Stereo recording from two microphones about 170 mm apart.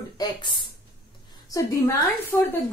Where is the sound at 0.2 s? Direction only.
25° left (ahead or behind).